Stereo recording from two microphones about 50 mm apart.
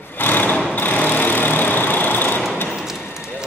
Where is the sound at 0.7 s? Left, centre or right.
Left.